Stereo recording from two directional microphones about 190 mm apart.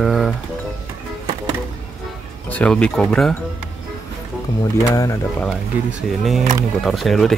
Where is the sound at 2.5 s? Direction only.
5° left (ahead or behind).